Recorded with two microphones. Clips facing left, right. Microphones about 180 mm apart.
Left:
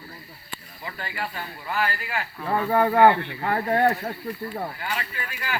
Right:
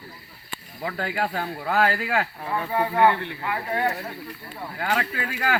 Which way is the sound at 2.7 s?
45° left (ahead or behind).